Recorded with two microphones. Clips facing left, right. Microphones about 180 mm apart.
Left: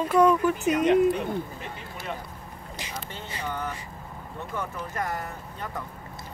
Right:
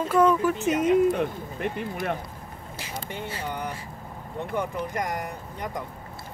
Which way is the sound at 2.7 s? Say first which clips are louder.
Right 3 dB; 10° right (ahead or behind).